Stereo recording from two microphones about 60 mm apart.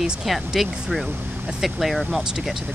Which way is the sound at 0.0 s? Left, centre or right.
Centre.